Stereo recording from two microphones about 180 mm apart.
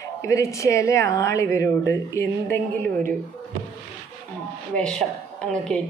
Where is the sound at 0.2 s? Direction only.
15° left (ahead or behind).